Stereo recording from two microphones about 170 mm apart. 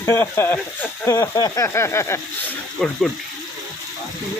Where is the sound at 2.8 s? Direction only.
5° left (ahead or behind).